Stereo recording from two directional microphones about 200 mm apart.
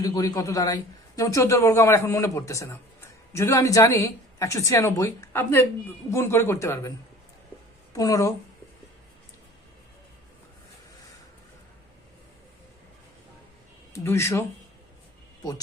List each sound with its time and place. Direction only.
0.0 s a man's voice: 20° left (ahead or behind)
7.9 s a man's voice: 15° left (ahead or behind)
13.9 s a man's voice: 15° left (ahead or behind)